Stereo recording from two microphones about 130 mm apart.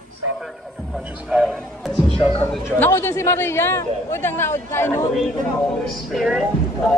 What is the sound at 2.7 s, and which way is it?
Speech, 20° left (ahead or behind).